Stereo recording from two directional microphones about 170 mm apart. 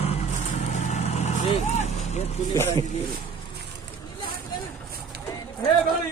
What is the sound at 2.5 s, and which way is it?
Speech, 15° left (ahead or behind).